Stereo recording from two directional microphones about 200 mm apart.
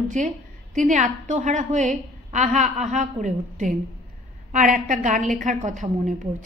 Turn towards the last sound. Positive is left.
turn(degrees=-40)  # may be behind; listen again after turning